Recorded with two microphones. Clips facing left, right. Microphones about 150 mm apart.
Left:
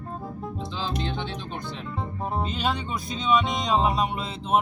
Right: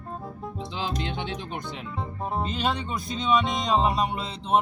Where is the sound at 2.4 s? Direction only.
Centre (ahead or behind).